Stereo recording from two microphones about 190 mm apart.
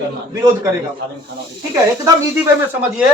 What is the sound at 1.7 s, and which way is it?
Speech, 15° right (ahead or behind).